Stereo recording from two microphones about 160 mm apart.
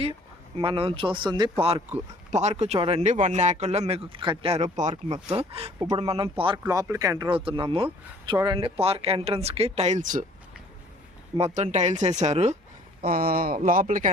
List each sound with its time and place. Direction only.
0.0 s a man's voice: 35° right (ahead or behind); by 7.3 s 20° right (ahead or behind)
7.3 s speech: 35° right (ahead or behind); by 10.2 s 55° right (ahead or behind)
11.3 s a man's voice: 40° right (ahead or behind)
13.0 s a man's voice: 70° right (ahead or behind)